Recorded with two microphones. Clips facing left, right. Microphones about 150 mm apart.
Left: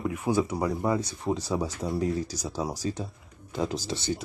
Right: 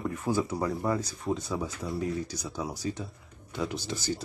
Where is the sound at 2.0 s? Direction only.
40° left (ahead or behind).